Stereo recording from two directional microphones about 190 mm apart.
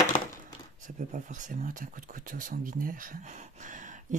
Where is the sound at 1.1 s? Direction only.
40° right (ahead or behind).